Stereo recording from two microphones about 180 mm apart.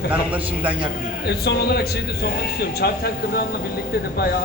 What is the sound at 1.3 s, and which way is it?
Speech, 65° left (ahead or behind).